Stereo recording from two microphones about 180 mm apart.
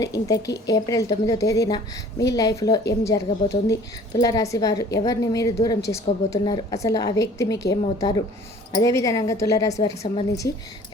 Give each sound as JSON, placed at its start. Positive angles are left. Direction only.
{"t": 0.0, "sound": "a woman's voice", "side_deg": 20}